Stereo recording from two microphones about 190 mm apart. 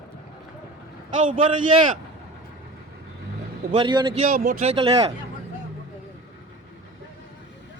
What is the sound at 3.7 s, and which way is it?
Speech, 25° right (ahead or behind).